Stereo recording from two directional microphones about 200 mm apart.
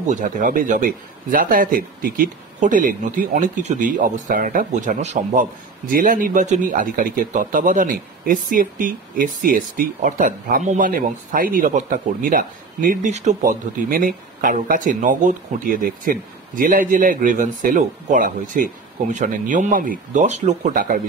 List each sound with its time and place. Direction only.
0.0 s speech: 40° right (ahead or behind)